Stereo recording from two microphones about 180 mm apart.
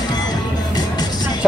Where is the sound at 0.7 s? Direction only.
25° left (ahead or behind).